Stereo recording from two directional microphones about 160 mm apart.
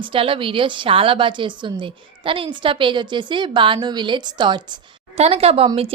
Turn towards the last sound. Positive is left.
turn(degrees=-40)  # may be behind; listen again after turning